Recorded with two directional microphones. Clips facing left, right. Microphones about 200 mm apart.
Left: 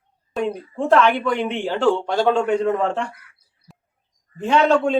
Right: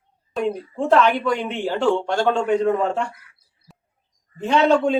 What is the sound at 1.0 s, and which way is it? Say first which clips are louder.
Speech: even; 40° right (ahead or behind).